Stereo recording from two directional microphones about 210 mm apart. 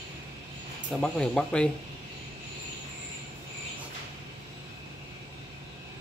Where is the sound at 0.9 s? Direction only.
Centre (ahead or behind).